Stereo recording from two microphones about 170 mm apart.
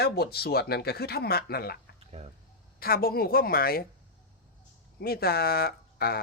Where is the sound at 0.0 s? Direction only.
70° left (ahead or behind).